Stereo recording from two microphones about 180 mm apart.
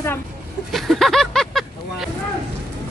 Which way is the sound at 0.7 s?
Centre (ahead or behind).